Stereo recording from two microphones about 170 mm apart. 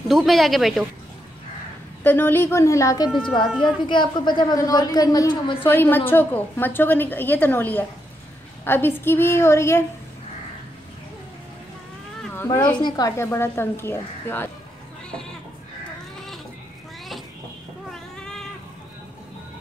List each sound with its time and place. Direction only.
0.1 s speech: centre (ahead or behind)
2.0 s a woman's voice: 15° left (ahead or behind)
5.6 s a woman's voice: 10° left (ahead or behind)
12.8 s a woman's voice: 20° left (ahead or behind)
18.1 s a sound: 5° left (ahead or behind)